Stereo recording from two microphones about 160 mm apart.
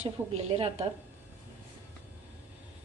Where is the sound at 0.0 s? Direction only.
40° right (ahead or behind).